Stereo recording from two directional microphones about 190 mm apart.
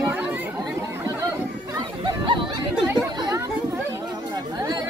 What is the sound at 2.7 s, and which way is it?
Chatter, 5° right (ahead or behind).